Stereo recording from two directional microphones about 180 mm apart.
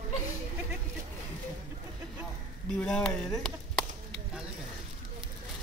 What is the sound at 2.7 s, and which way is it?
Speech, 5° left (ahead or behind).